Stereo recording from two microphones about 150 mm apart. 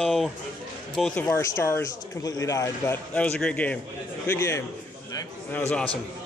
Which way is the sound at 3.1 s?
10° left (ahead or behind).